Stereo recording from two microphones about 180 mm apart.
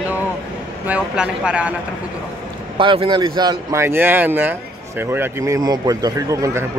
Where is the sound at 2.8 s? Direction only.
30° right (ahead or behind).